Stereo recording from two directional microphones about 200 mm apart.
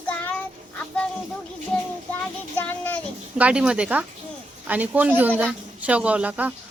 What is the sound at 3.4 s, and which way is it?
Speech, 5° right (ahead or behind).